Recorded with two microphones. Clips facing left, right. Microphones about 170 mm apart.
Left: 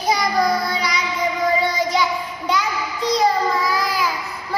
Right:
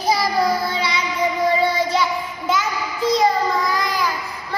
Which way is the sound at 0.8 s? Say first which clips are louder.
Right 1 dB; 30° right (ahead or behind).